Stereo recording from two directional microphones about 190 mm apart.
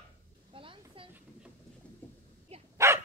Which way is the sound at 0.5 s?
30° right (ahead or behind).